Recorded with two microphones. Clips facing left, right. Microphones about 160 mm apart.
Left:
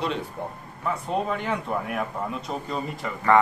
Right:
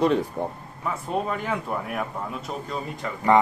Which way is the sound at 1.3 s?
Centre (ahead or behind).